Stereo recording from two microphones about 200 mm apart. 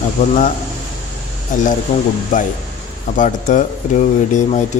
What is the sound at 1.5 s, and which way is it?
Speech, 40° left (ahead or behind).